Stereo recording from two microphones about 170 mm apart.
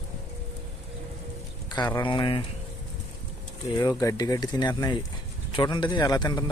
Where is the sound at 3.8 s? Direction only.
20° left (ahead or behind).